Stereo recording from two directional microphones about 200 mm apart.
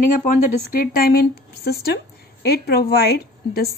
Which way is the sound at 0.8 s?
50° left (ahead or behind).